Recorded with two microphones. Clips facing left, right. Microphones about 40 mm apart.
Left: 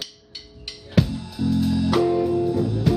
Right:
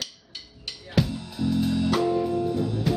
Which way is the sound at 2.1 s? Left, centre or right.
Centre.